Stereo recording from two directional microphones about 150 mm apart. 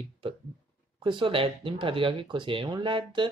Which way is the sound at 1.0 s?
35° right (ahead or behind).